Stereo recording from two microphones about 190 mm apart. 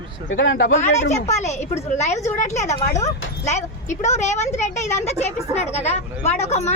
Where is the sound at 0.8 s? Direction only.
35° left (ahead or behind).